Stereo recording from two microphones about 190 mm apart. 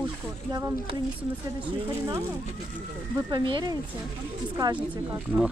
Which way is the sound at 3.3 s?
25° right (ahead or behind).